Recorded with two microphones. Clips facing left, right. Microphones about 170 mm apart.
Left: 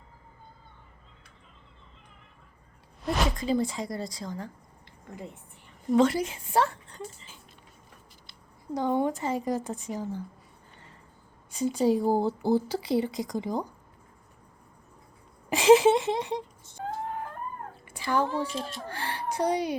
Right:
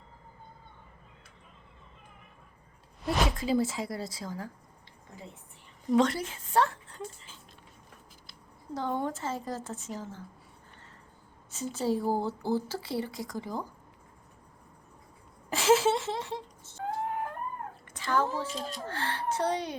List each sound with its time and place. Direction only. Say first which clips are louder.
3.0 s speech: left 1 dB; centre (ahead or behind)
5.9 s speech: left 3 dB; 5° left (ahead or behind)
8.7 s speech: left 5 dB; 15° left (ahead or behind)
11.5 s speech: left 6 dB; 15° left (ahead or behind)
15.4 s a sound: left 6 dB; 15° left (ahead or behind)
17.8 s a sound: left 2 dB; 10° left (ahead or behind)
18.9 s a child's voice: right 1 dB; 15° left (ahead or behind)